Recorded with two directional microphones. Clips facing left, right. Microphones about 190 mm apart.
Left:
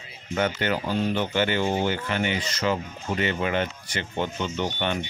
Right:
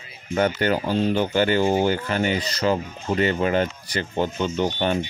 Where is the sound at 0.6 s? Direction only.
40° right (ahead or behind).